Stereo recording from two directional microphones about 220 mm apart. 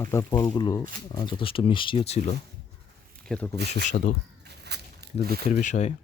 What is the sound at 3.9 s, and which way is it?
Speech, 35° left (ahead or behind).